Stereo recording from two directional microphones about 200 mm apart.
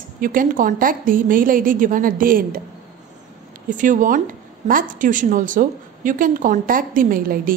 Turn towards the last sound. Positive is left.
turn(degrees=-45)  # may be behind; listen again after turning